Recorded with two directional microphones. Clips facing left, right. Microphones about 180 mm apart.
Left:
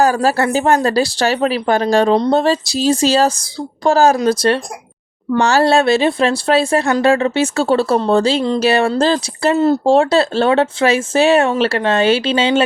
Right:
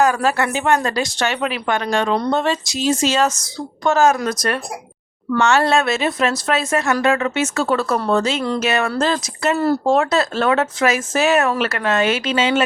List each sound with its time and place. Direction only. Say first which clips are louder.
0.0 s speech: left 3 dB; 35° left (ahead or behind)